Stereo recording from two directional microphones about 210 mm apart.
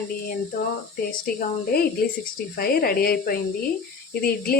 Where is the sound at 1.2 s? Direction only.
45° left (ahead or behind).